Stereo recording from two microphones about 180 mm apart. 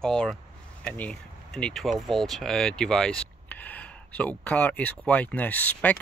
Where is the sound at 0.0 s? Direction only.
5° left (ahead or behind).